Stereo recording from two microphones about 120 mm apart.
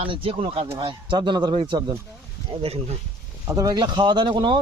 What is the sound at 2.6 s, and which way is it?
Speech, 55° right (ahead or behind).